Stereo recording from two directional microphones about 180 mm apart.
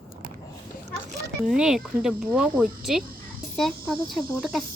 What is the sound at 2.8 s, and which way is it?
Insect, 5° right (ahead or behind).